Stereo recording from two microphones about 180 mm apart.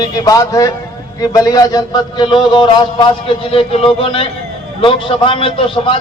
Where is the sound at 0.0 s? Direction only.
20° left (ahead or behind).